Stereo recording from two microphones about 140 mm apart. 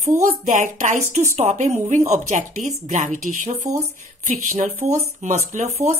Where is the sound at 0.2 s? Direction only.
65° right (ahead or behind).